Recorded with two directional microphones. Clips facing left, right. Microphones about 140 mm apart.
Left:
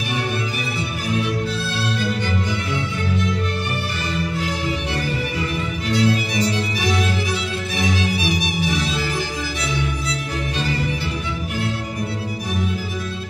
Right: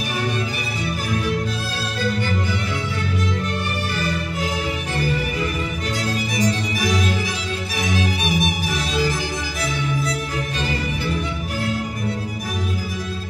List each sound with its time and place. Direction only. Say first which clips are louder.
5.9 s violin: left 8 dB; 45° right (ahead or behind)
8.2 s music: right 1 dB; 50° right (ahead or behind)